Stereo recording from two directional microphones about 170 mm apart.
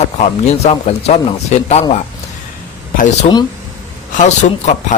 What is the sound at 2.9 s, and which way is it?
Speech, 45° left (ahead or behind).